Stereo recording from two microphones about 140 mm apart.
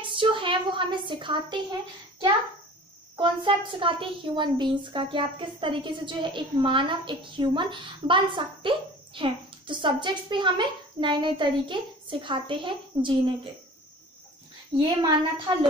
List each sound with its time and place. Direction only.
0.0 s a woman's voice: 35° right (ahead or behind)
14.8 s a woman's voice: 35° right (ahead or behind)